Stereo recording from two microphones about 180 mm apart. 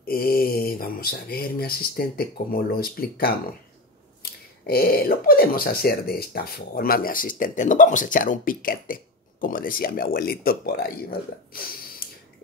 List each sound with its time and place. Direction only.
0.0 s speech: 55° left (ahead or behind)